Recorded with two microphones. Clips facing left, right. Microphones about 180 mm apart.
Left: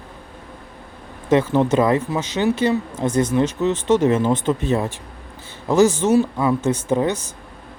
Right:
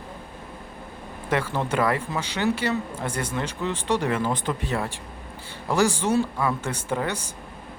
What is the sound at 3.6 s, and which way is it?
Speech, 20° left (ahead or behind).